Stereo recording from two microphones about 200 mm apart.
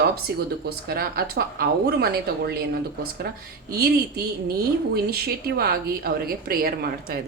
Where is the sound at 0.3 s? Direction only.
50° right (ahead or behind).